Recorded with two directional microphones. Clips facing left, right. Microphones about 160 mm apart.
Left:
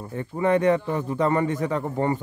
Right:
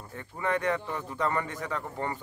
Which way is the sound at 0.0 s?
25° left (ahead or behind).